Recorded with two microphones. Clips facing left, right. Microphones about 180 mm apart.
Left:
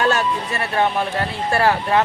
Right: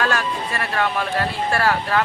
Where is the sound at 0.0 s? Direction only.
25° left (ahead or behind).